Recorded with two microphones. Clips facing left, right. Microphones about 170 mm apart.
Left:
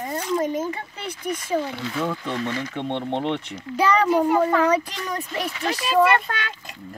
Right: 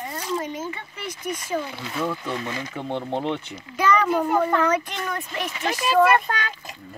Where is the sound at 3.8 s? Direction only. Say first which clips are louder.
Left 1 dB; 30° left (ahead or behind).